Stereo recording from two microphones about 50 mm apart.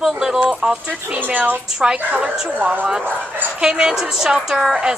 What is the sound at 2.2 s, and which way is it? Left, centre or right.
Speech, centre.